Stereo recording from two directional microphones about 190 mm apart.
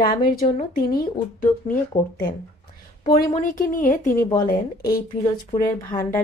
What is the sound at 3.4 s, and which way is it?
Speech, 45° left (ahead or behind).